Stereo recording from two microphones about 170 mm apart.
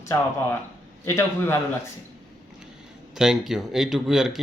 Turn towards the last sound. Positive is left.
turn(degrees=-5)  # may be behind; listen again after turning